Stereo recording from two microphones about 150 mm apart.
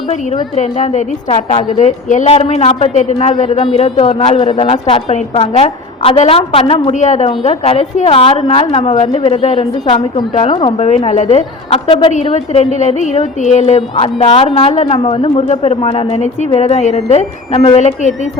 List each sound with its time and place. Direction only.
0.5 s a man's voice: 50° left (ahead or behind)
9.8 s a woman's voice: 30° left (ahead or behind)
12.3 s a man's voice: 50° left (ahead or behind)